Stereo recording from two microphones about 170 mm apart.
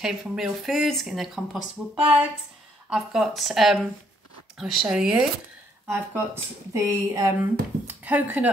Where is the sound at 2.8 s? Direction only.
5° right (ahead or behind).